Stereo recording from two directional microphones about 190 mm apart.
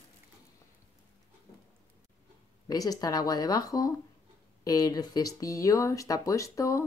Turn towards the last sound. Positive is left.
turn(degrees=15)  # may be behind; listen again after turning